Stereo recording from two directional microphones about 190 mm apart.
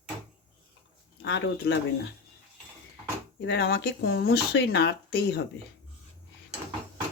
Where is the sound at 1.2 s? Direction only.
70° left (ahead or behind).